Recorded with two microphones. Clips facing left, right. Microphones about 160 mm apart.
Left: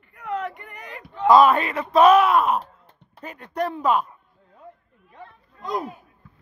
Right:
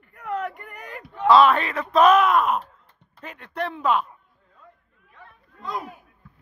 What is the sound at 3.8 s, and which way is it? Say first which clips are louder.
Speech: even; 10° left (ahead or behind).